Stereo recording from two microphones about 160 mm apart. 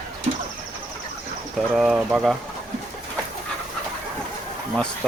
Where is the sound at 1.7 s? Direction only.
5° right (ahead or behind).